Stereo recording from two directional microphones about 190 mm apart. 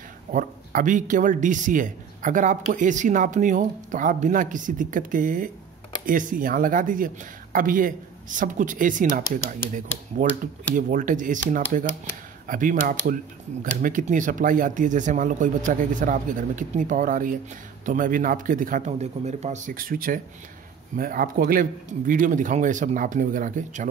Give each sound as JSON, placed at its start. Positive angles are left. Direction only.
{"t": 0.3, "sound": "speech", "side_deg": -45}